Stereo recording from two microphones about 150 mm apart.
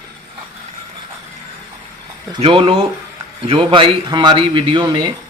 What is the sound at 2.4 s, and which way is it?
Speech, 35° right (ahead or behind).